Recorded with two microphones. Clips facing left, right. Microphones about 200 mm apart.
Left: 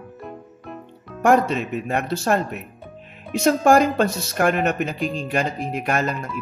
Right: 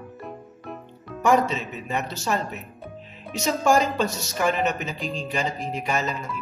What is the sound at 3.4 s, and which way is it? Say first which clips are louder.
Speech: left 5 dB; 55° left (ahead or behind).